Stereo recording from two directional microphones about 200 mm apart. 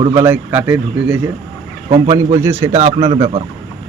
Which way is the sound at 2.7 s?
30° right (ahead or behind).